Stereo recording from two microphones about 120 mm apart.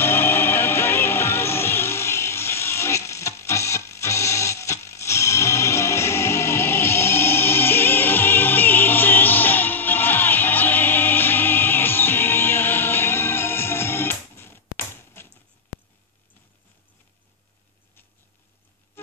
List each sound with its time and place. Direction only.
0.0 s music: 20° left (ahead or behind)